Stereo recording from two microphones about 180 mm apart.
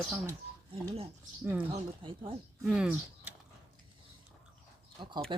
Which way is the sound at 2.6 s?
5° right (ahead or behind).